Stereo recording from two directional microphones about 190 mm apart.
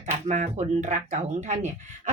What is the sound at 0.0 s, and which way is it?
Speech, 40° right (ahead or behind).